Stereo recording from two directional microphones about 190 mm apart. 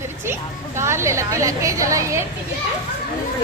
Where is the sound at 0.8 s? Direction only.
15° right (ahead or behind).